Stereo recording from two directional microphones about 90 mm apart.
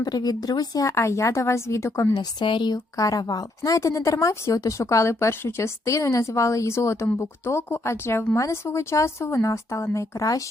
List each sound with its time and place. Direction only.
0.0 s a woman's voice: 45° left (ahead or behind); by 2.1 s 30° left (ahead or behind)
2.1 s a woman's voice: 65° left (ahead or behind); by 10.4 s 35° left (ahead or behind)